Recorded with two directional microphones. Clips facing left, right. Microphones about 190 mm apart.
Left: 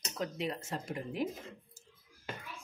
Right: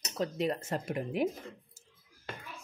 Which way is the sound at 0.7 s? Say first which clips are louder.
Right 5 dB; 60° right (ahead or behind).